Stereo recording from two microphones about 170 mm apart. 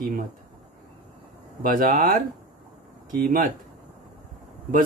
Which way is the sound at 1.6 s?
55° right (ahead or behind).